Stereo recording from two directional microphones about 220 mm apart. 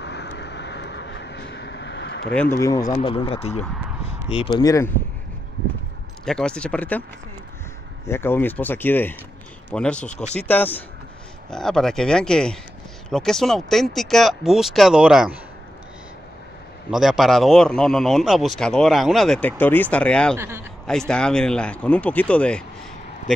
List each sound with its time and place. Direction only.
0.0 s vehicle: 50° left (ahead or behind)
2.6 s speech: 15° left (ahead or behind)
6.2 s a man's voice: 5° left (ahead or behind)
8.1 s a man's voice: 10° left (ahead or behind)
16.9 s a man's voice: centre (ahead or behind)
20.3 s a man's voice: 10° right (ahead or behind)
21.1 s a man's voice: 5° left (ahead or behind)